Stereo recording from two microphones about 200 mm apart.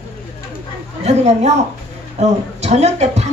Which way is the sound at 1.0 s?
35° right (ahead or behind).